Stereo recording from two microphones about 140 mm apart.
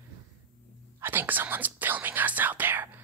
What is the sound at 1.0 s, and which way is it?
Speech, 15° right (ahead or behind).